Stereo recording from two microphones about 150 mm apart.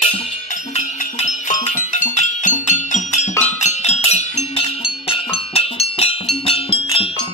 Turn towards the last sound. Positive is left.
turn(degrees=35)  # may be behind; listen again after turning